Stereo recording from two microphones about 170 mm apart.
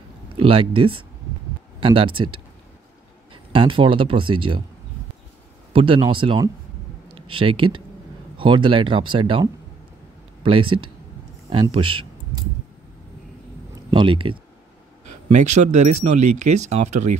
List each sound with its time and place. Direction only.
0.3 s speech: 35° right (ahead or behind)
3.5 s speech: 30° right (ahead or behind)
5.7 s speech: 30° right (ahead or behind)
11.7 s a sound: 30° right (ahead or behind)
13.8 s speech: 30° right (ahead or behind)
15.2 s speech: 45° right (ahead or behind)